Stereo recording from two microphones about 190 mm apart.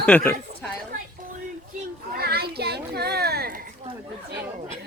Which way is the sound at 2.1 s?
55° right (ahead or behind).